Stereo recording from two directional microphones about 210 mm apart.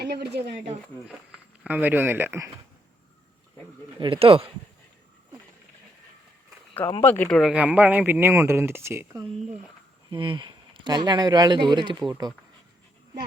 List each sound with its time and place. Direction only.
0.0 s speech: 50° right (ahead or behind)
1.6 s speech: 10° right (ahead or behind)
4.0 s speech: 25° right (ahead or behind)
7.0 s speech: 10° left (ahead or behind); by 9.2 s 10° right (ahead or behind)
10.1 s speech: 25° right (ahead or behind)